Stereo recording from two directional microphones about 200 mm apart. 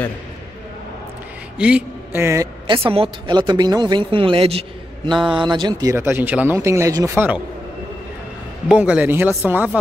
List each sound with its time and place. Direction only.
1.6 s a woman's voice: 5° right (ahead or behind); by 5.1 s 30° right (ahead or behind)
5.1 s a sound: centre (ahead or behind)
5.4 s speech: 20° right (ahead or behind)
8.6 s speech: 5° right (ahead or behind)